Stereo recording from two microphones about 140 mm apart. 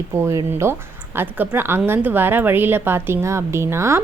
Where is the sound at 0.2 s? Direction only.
20° right (ahead or behind).